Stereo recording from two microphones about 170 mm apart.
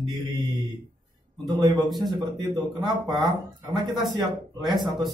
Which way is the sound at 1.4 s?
25° right (ahead or behind).